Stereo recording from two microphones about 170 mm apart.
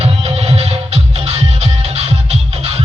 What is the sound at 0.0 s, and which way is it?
Music, 35° right (ahead or behind).